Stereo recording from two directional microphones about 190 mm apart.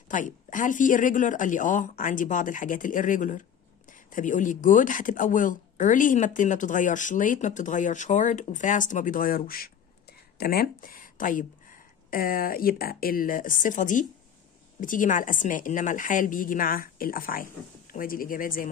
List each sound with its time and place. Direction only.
0.1 s speech: 45° left (ahead or behind)